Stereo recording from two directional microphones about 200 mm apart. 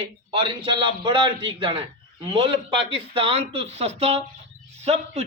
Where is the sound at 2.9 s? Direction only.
25° right (ahead or behind).